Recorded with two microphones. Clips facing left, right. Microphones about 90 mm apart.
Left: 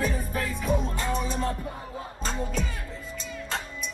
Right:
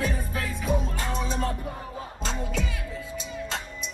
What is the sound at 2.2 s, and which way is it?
Music, 40° left (ahead or behind).